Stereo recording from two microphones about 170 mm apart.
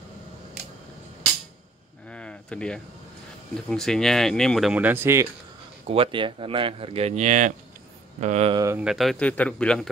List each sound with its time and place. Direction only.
2.0 s a sound: 5° left (ahead or behind)
3.7 s speech: 5° left (ahead or behind); by 5.3 s 15° right (ahead or behind)
5.9 s speech: 30° right (ahead or behind)
8.7 s speech: centre (ahead or behind)